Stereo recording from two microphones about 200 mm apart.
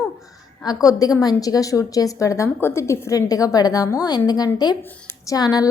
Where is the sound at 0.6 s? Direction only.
20° left (ahead or behind).